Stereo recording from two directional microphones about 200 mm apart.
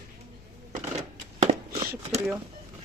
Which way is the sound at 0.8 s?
35° right (ahead or behind).